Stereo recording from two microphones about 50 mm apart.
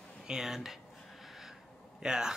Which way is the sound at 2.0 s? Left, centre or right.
Centre.